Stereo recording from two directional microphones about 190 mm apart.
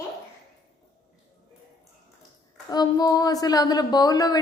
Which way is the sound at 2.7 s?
20° left (ahead or behind).